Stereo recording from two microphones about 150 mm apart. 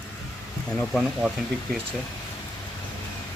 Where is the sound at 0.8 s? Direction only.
Centre (ahead or behind).